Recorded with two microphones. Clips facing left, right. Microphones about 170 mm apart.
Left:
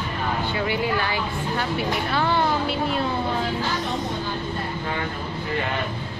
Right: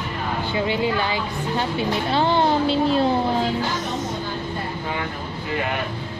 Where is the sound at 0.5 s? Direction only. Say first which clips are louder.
Right 5 dB; 25° right (ahead or behind).